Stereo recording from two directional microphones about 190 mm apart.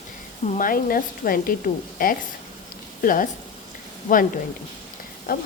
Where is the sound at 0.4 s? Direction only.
45° left (ahead or behind).